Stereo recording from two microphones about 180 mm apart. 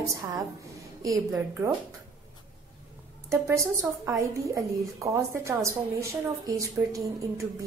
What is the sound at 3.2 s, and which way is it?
A woman's voice, 15° right (ahead or behind).